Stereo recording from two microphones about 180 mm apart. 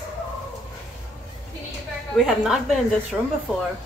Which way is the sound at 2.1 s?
Centre (ahead or behind).